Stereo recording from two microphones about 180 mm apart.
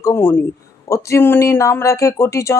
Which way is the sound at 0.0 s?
10° left (ahead or behind).